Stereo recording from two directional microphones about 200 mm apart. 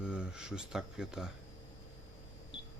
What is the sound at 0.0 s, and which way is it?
Speech, 5° right (ahead or behind).